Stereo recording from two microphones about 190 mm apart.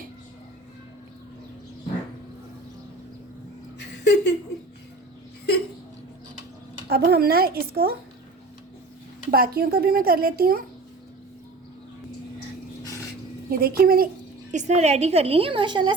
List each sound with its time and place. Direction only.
3.8 s a sound: 65° left (ahead or behind)
6.8 s speech: 55° right (ahead or behind)
9.3 s speech: 50° right (ahead or behind)
13.5 s speech: 50° right (ahead or behind)
14.5 s a woman's voice: 35° right (ahead or behind)